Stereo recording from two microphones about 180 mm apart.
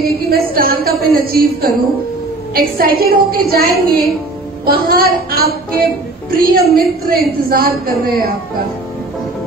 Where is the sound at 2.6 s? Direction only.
55° right (ahead or behind).